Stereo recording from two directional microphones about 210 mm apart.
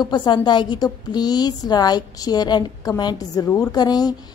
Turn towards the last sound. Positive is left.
turn(degrees=20)  # may be behind; listen again after turning